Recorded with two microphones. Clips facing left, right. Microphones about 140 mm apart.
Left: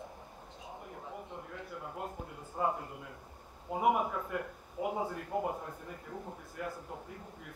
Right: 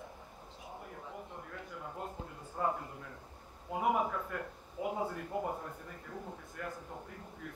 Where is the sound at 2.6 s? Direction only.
15° left (ahead or behind).